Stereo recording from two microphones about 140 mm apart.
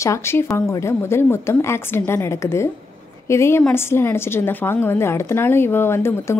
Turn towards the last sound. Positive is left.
turn(degrees=20)  # may be behind; listen again after turning